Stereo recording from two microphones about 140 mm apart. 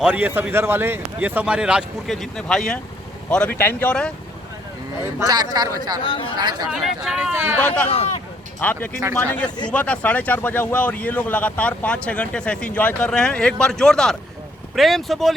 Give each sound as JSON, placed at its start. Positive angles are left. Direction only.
{"t": 0.0, "sound": "a man's voice", "side_deg": -10}
{"t": 5.2, "sound": "speech", "side_deg": -30}
{"t": 6.0, "sound": "speech", "side_deg": 35}
{"t": 6.4, "sound": "speech", "side_deg": -30}
{"t": 6.7, "sound": "speech", "side_deg": -5}
{"t": 7.3, "sound": "a man's voice", "side_deg": -15}
{"t": 7.9, "sound": "speech", "side_deg": 45}
{"t": 8.6, "sound": "speech", "side_deg": 10}